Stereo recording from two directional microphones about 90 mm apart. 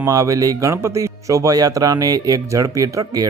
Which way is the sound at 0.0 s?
40° right (ahead or behind).